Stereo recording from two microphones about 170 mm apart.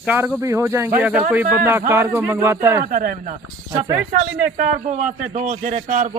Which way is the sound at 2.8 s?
55° right (ahead or behind).